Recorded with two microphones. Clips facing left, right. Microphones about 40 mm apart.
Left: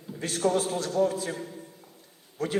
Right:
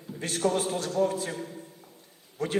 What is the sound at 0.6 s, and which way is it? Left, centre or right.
Speech, right.